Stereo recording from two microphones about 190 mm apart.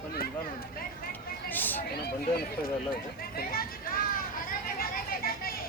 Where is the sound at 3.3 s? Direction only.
50° left (ahead or behind).